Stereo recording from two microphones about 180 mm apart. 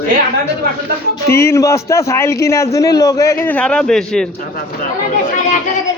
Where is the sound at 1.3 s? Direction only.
15° left (ahead or behind).